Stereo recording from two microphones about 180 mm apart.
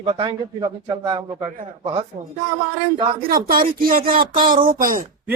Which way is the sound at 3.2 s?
55° right (ahead or behind).